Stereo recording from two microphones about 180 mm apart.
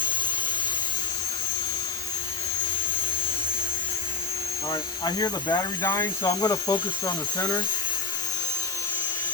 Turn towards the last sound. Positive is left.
turn(degrees=20)  # may be behind; listen again after turning